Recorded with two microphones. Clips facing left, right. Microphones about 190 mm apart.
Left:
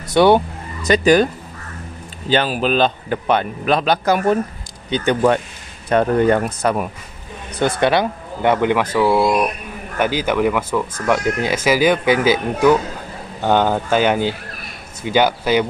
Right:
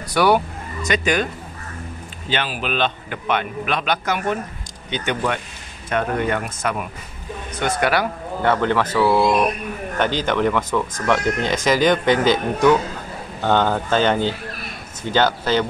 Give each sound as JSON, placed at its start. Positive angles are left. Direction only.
{"t": 0.1, "sound": "a man's voice", "side_deg": 25}